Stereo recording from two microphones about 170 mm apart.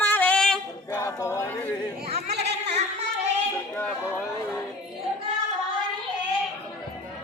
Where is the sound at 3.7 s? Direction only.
10° left (ahead or behind).